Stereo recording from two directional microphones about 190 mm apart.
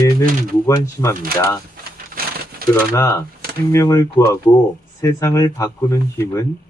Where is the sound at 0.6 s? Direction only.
15° left (ahead or behind).